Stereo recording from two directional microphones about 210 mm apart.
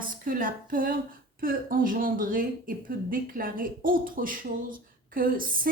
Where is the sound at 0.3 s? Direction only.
40° right (ahead or behind).